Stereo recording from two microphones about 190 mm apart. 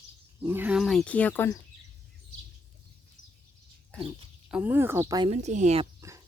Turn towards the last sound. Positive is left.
turn(degrees=-35)  # may be behind; listen again after turning